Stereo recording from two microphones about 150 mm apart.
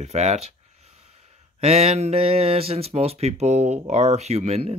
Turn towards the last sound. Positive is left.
turn(degrees=-45)  # may be behind; listen again after turning